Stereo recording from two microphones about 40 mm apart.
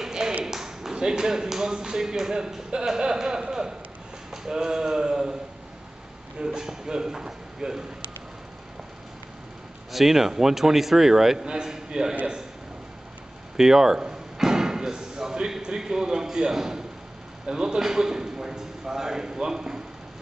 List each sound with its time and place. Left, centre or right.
0.0 s a sound: centre
0.5 s speech: centre
6.4 s speech: centre
9.9 s speech: centre
13.6 s a man's voice: centre